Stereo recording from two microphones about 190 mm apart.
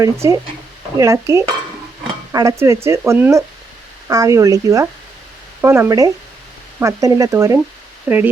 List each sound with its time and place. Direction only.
0.0 s speech: 15° right (ahead or behind)